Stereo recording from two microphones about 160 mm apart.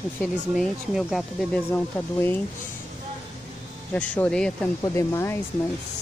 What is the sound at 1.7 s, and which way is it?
Speech, 15° left (ahead or behind).